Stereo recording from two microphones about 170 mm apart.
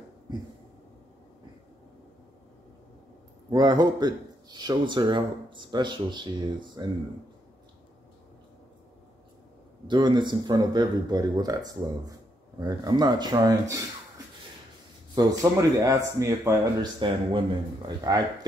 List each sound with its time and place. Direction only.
3.4 s speech: 25° right (ahead or behind)
9.8 s speech: 25° right (ahead or behind)
15.1 s speech: 20° right (ahead or behind)
17.0 s speech: 30° right (ahead or behind)